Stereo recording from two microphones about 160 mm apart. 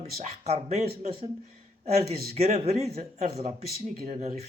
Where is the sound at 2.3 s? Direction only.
40° right (ahead or behind).